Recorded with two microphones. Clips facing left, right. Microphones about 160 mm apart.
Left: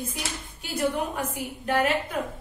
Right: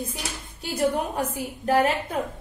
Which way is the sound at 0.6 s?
35° right (ahead or behind).